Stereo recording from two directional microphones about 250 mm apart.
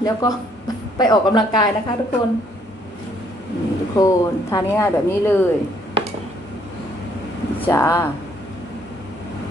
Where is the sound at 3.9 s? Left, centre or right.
Centre.